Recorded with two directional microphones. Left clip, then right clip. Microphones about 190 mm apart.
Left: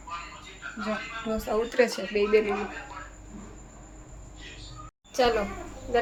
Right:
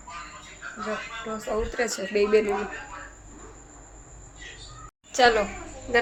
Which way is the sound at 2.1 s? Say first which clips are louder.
Right 3 dB; 20° right (ahead or behind).